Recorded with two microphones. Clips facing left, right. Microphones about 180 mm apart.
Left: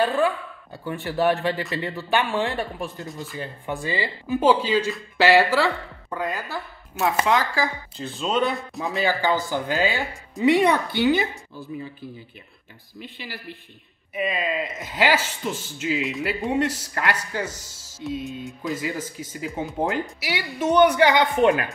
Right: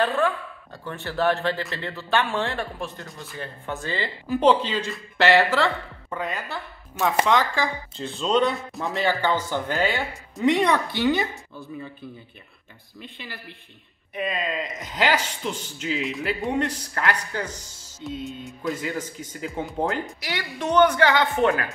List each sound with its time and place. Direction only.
0.8 s speech: 15° left (ahead or behind)
3.1 s speech: centre (ahead or behind)
3.3 s speech: 15° left (ahead or behind)
14.1 s speech: 5° left (ahead or behind)